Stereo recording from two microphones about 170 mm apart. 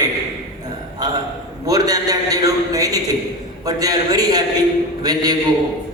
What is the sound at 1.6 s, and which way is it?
A man's voice, 20° right (ahead or behind).